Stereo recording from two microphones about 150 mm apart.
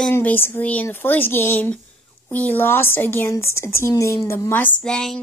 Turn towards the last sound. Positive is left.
turn(degrees=5)  # may be behind; listen again after turning